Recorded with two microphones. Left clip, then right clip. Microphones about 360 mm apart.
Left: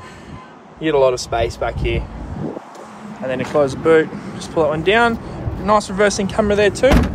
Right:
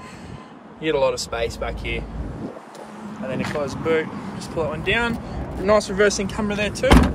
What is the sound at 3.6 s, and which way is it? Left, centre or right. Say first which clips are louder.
Speech: left 9 dB; centre.